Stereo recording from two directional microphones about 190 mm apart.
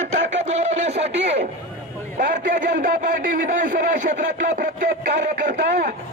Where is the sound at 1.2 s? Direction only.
35° right (ahead or behind).